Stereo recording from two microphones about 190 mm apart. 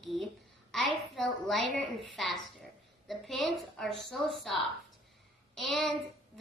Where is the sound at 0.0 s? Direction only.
Centre (ahead or behind).